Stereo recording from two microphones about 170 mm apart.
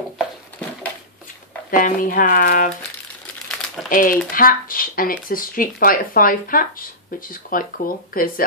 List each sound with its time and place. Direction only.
1.8 s speech: 55° left (ahead or behind)
3.9 s speech: 55° left (ahead or behind)